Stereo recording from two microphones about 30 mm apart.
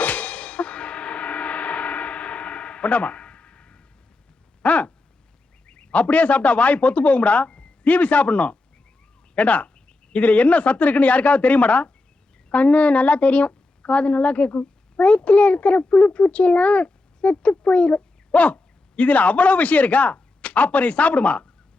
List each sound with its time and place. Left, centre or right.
0.0 s gong: left
4.6 s a sound: left
5.6 s a man's voice: left